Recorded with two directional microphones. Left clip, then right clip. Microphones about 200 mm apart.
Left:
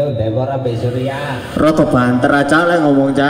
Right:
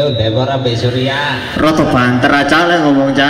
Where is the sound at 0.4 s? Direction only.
10° left (ahead or behind).